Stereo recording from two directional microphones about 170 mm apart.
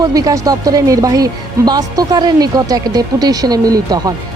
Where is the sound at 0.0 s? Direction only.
20° right (ahead or behind).